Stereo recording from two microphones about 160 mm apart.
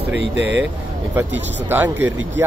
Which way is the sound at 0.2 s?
90° right.